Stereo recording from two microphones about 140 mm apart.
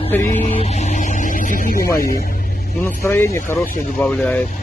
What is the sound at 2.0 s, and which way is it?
Music, 90° left.